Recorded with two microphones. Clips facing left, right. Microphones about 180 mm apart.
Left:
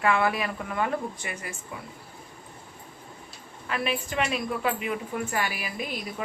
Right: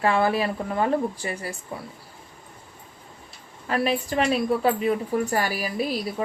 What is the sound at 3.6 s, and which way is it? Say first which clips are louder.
A woman's voice: right 6 dB; 35° right (ahead or behind).